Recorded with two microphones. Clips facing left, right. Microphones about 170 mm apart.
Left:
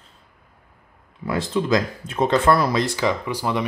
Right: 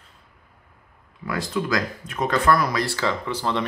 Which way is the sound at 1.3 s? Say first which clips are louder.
Left 4 dB; 25° left (ahead or behind).